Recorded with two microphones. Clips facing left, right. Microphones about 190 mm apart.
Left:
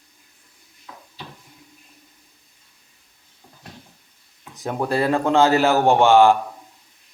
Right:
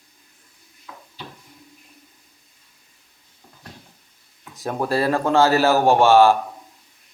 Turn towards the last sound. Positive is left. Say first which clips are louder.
# even
turn(degrees=15)  # may be behind; listen again after turning